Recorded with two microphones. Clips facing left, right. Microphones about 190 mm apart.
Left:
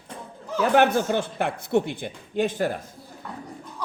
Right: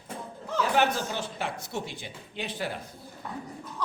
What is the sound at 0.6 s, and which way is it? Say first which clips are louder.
Speech: left 7 dB; 55° left (ahead or behind).